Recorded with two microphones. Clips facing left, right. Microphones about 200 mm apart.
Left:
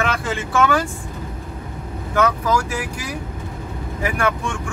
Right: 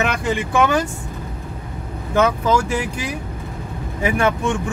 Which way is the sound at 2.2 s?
25° right (ahead or behind).